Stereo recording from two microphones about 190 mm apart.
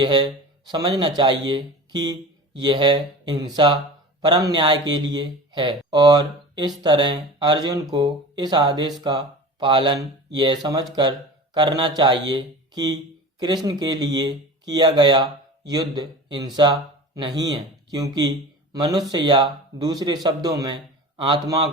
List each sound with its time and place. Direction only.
0.0 s speech: 25° right (ahead or behind)